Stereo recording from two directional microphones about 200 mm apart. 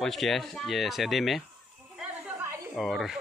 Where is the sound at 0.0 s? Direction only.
Centre (ahead or behind).